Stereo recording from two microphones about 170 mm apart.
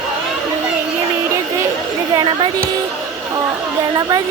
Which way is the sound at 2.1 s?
25° right (ahead or behind).